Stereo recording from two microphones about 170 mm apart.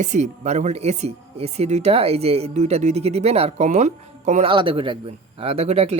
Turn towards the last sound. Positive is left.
turn(degrees=-35)  # may be behind; listen again after turning